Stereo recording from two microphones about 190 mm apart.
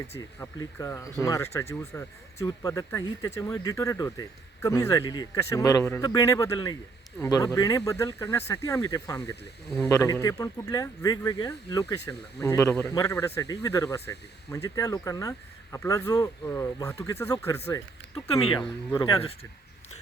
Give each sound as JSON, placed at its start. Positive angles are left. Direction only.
{"t": 0.2, "sound": "speech", "side_deg": 15}
{"t": 9.6, "sound": "speech", "side_deg": 0}
{"t": 9.9, "sound": "speech", "side_deg": 20}
{"t": 18.9, "sound": "speech", "side_deg": 20}